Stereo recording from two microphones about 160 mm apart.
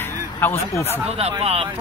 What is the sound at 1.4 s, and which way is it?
Speech, 40° right (ahead or behind).